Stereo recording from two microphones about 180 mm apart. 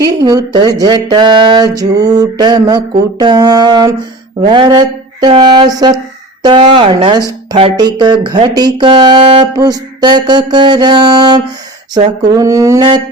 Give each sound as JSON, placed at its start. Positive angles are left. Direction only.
{"t": 0.0, "sound": "speech", "side_deg": -20}
{"t": 9.6, "sound": "speech", "side_deg": -20}
{"t": 12.3, "sound": "mantra", "side_deg": -20}